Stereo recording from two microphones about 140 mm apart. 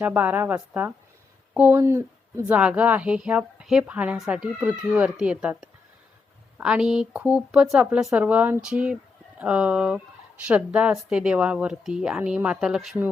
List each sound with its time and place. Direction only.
0.0 s a woman's voice: 10° right (ahead or behind)